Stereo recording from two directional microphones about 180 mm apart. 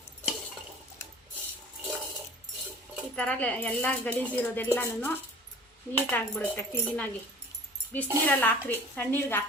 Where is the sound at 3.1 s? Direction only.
5° left (ahead or behind).